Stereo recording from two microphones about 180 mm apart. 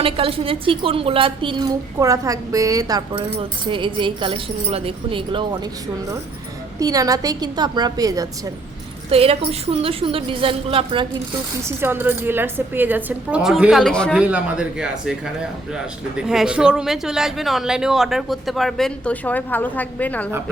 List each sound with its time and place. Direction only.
0.0 s a woman's voice: 30° right (ahead or behind)
6.7 s a woman's voice: 20° right (ahead or behind)
9.0 s a woman's voice: 30° right (ahead or behind)
11.8 s a woman's voice: 10° right (ahead or behind)
16.1 s speech: 5° right (ahead or behind)